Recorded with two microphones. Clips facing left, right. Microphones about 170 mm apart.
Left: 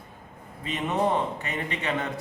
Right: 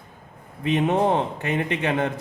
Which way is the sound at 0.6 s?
55° right (ahead or behind).